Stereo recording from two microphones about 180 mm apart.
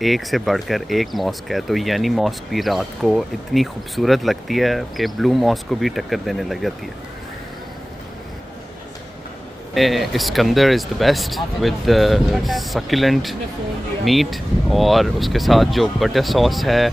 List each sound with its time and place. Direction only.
0.0 s speech: centre (ahead or behind)
9.8 s speech: centre (ahead or behind)